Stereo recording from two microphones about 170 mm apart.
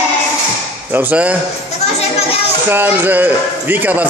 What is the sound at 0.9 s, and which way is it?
Speech, 10° right (ahead or behind).